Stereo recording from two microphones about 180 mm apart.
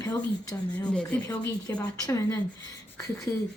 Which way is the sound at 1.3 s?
20° left (ahead or behind).